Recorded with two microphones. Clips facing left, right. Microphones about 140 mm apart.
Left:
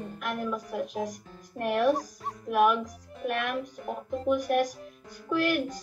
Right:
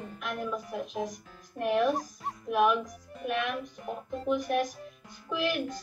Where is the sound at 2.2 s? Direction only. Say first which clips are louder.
Left 1 dB; 5° left (ahead or behind).